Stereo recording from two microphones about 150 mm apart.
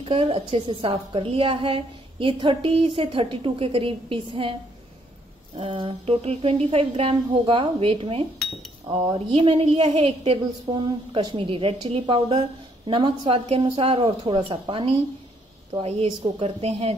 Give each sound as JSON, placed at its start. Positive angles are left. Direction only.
{"t": 0.0, "sound": "a woman's voice", "side_deg": -40}
{"t": 5.6, "sound": "a woman's voice", "side_deg": -35}